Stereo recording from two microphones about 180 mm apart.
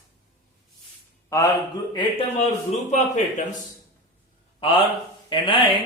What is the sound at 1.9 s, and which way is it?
Speech, 30° left (ahead or behind).